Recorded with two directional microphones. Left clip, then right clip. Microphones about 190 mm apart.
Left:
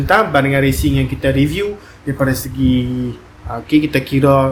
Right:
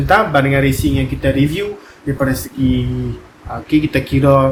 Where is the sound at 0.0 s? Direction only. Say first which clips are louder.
Even; 40° left (ahead or behind).